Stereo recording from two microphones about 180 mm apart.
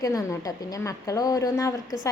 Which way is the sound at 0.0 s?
20° left (ahead or behind).